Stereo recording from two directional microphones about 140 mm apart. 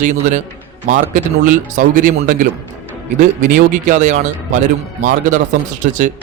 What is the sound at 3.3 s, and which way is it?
Speech, 70° right (ahead or behind).